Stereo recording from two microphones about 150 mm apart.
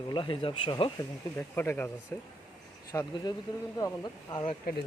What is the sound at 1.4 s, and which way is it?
Speech, 15° left (ahead or behind).